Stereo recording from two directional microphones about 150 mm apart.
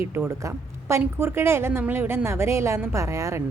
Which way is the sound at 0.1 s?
15° right (ahead or behind).